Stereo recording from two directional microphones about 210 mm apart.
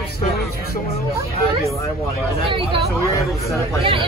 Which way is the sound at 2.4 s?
25° right (ahead or behind).